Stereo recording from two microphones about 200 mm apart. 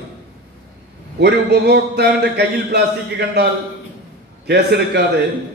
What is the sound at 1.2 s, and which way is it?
A man's voice, 55° right (ahead or behind).